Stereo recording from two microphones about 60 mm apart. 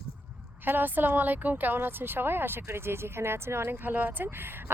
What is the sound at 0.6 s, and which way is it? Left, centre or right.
A woman's voice, right.